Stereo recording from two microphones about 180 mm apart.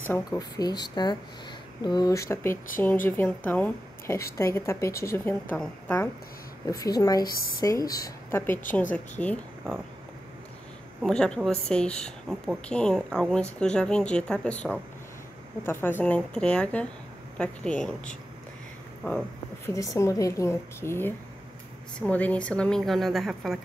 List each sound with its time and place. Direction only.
0.1 s a woman's voice: 20° left (ahead or behind)
6.8 s a woman's voice: 20° left (ahead or behind)
11.0 s a woman's voice: 5° left (ahead or behind)